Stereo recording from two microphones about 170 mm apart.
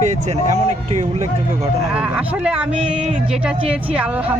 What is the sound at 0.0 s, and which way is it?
Speech, 45° right (ahead or behind).